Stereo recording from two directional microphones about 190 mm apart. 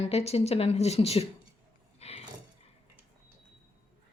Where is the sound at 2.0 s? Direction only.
35° left (ahead or behind).